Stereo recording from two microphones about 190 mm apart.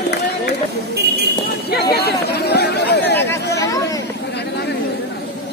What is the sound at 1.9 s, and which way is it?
Chatter, 55° left (ahead or behind).